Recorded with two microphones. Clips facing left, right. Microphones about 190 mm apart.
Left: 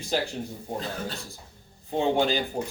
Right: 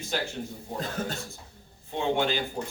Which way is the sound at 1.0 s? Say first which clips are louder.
Right 2 dB; 45° right (ahead or behind).